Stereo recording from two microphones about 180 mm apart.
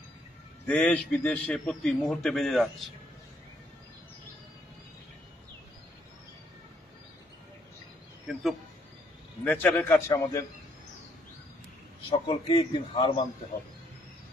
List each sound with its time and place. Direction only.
0.7 s a man's voice: 5° left (ahead or behind)
8.3 s a man's voice: centre (ahead or behind); by 10.4 s 15° left (ahead or behind)
12.1 s a man's voice: 30° left (ahead or behind)